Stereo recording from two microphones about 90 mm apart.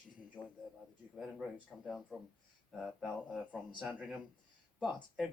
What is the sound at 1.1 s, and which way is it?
Speech, 5° right (ahead or behind).